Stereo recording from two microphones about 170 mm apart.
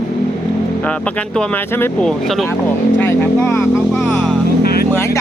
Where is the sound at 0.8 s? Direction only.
5° left (ahead or behind).